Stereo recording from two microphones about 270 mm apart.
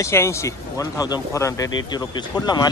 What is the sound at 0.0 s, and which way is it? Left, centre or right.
A man's voice, centre.